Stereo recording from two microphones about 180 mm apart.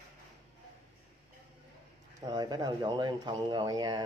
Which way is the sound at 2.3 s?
20° right (ahead or behind).